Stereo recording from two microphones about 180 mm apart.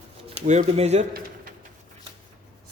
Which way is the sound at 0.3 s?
40° right (ahead or behind).